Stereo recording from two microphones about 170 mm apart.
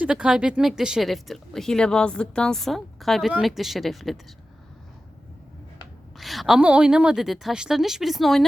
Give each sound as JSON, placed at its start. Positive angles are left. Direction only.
{"t": 0.0, "sound": "speech", "side_deg": -5}
{"t": 6.1, "sound": "speech", "side_deg": 0}